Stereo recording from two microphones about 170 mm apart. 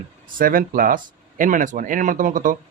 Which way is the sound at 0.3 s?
55° right (ahead or behind).